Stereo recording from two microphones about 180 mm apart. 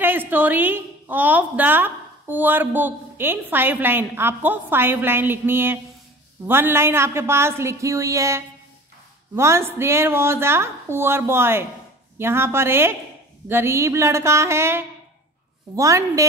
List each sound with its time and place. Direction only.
0.0 s a woman's voice: 10° right (ahead or behind)